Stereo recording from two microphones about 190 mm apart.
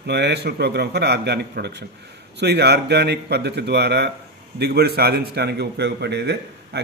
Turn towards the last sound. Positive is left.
turn(degrees=-60)  # may be behind; listen again after turning